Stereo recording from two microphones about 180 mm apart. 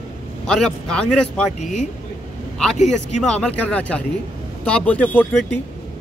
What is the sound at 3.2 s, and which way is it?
Speech, 5° left (ahead or behind).